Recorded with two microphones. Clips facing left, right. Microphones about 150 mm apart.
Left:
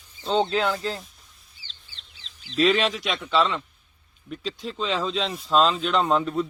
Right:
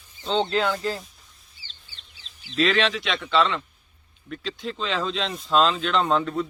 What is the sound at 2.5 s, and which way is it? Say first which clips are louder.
Speech: left 1 dB; 10° left (ahead or behind).